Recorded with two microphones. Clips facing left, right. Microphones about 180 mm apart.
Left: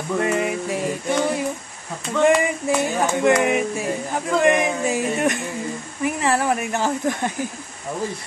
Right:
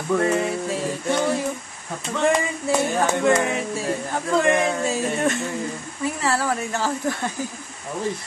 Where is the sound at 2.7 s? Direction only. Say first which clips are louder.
Right 2 dB; 15° left (ahead or behind).